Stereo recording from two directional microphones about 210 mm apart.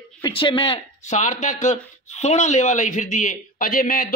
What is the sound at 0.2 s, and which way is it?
A man's voice, 25° left (ahead or behind).